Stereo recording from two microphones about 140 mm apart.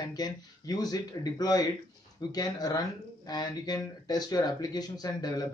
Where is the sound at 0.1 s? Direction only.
30° left (ahead or behind).